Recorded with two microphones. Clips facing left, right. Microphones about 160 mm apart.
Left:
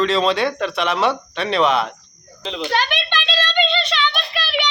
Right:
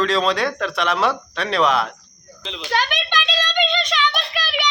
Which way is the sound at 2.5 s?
55° left (ahead or behind).